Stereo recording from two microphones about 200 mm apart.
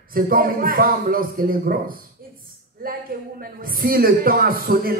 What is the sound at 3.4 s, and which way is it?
A man's voice, 45° right (ahead or behind).